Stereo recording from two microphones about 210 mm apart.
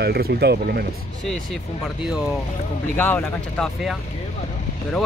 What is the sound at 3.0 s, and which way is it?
Speech, 10° left (ahead or behind).